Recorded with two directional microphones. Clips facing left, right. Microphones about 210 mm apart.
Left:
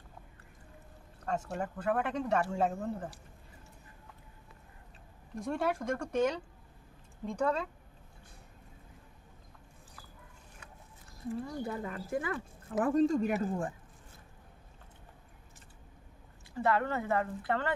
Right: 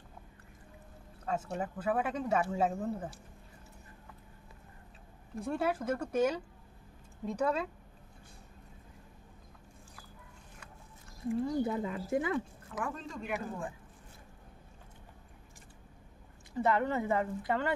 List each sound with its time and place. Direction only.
1.2 s speech: 5° right (ahead or behind)
5.3 s speech: centre (ahead or behind)
11.6 s speech: 20° right (ahead or behind)
12.7 s speech: 40° left (ahead or behind)
16.5 s speech: 20° right (ahead or behind)